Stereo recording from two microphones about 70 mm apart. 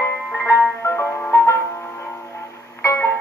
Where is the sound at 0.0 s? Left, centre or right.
Left.